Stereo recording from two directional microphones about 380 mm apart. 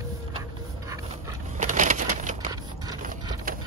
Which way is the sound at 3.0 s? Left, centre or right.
Right.